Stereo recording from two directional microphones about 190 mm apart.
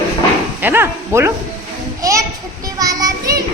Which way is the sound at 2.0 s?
15° right (ahead or behind).